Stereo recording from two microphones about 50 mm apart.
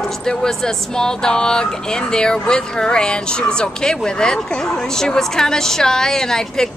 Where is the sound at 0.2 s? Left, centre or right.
Centre.